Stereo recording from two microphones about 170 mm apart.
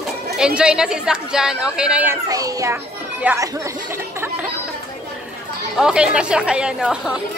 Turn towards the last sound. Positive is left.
turn(degrees=-5)  # may be behind; listen again after turning